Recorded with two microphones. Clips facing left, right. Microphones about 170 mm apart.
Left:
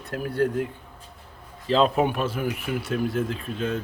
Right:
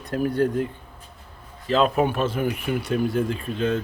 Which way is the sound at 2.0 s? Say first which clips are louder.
Right 2 dB; 10° left (ahead or behind).